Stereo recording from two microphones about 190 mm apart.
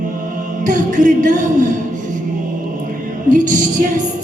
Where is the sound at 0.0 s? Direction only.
45° right (ahead or behind).